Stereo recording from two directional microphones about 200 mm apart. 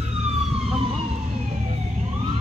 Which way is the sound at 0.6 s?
30° right (ahead or behind).